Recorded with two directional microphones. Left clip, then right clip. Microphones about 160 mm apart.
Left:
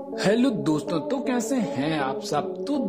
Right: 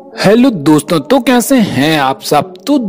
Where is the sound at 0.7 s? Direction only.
50° right (ahead or behind).